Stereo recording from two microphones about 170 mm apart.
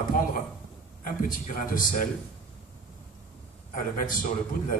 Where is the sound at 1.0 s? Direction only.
55° left (ahead or behind).